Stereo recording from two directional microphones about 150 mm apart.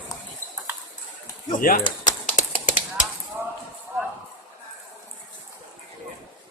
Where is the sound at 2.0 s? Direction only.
55° left (ahead or behind).